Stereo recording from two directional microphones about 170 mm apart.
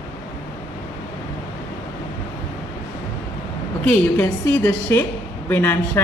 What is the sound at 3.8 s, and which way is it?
Speech, 10° left (ahead or behind).